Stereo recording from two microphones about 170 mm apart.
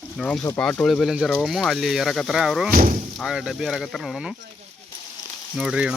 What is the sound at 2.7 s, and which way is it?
Speech, 55° right (ahead or behind).